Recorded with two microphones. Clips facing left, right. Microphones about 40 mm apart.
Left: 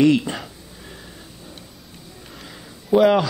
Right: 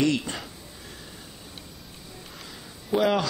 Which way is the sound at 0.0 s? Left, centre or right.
Centre.